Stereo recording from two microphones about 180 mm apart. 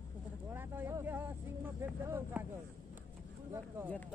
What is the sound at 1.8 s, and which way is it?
Speech, 15° right (ahead or behind).